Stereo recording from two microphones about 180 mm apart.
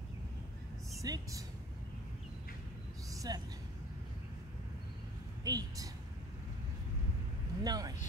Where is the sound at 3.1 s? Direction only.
20° right (ahead or behind).